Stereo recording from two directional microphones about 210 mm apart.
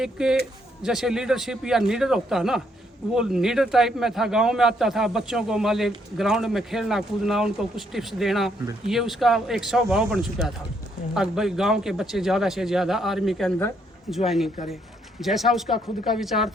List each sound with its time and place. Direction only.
0.0 s a man's voice: 5° right (ahead or behind)